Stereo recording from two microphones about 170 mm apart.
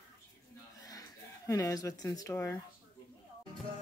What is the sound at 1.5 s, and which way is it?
Speech, 20° left (ahead or behind).